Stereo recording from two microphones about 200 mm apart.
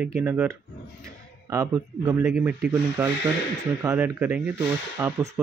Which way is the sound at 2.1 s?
15° right (ahead or behind).